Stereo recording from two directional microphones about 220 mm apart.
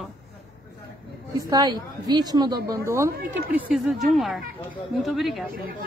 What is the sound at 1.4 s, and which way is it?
A woman's voice, 20° right (ahead or behind).